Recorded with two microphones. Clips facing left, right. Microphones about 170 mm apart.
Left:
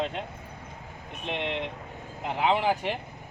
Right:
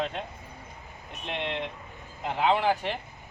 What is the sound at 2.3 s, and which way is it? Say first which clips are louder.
Speech: even; 15° left (ahead or behind).